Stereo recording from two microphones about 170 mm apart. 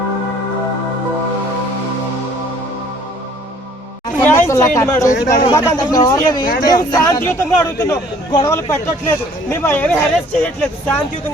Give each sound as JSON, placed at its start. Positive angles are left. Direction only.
{"t": 4.4, "sound": "a sound", "side_deg": 15}
{"t": 4.9, "sound": "speech", "side_deg": 45}
{"t": 5.5, "sound": "a man's voice", "side_deg": 20}
{"t": 8.3, "sound": "speech", "side_deg": 25}
{"t": 8.5, "sound": "speech", "side_deg": 15}